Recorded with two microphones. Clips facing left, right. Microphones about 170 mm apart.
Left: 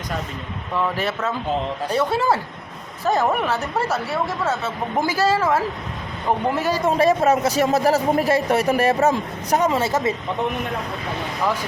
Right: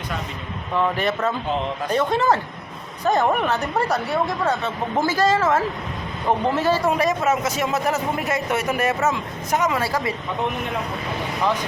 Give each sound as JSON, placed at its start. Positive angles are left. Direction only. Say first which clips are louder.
{"t": 0.9, "sound": "a woman's voice", "louder": "right 2 dB", "side_deg": 0}
{"t": 6.8, "sound": "speech", "louder": "left 3 dB", "side_deg": 30}